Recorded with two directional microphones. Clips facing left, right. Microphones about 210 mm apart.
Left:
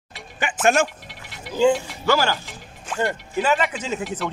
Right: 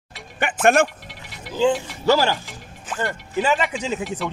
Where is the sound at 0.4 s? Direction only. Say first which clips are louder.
Right 2 dB; 55° right (ahead or behind).